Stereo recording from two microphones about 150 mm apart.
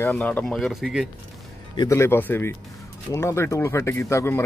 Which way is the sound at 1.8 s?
20° left (ahead or behind).